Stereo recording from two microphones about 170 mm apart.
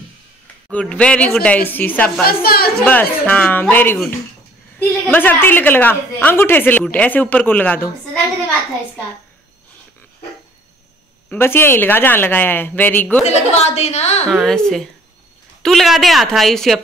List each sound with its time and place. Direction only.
0.7 s a woman's voice: 5° left (ahead or behind)
2.2 s a woman's voice: 65° left (ahead or behind)
2.8 s a woman's voice: 10° left (ahead or behind)
11.2 s a woman's voice: 15° left (ahead or behind)
13.2 s a woman's voice: 40° left (ahead or behind)
14.3 s speech: 5° left (ahead or behind)